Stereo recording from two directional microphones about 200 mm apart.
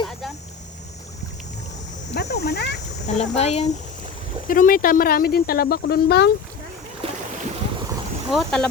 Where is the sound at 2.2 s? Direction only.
55° left (ahead or behind).